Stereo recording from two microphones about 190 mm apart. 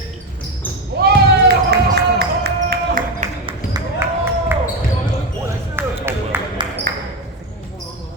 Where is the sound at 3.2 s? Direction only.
35° right (ahead or behind).